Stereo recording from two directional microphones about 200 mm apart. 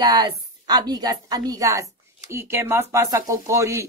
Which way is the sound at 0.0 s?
20° right (ahead or behind).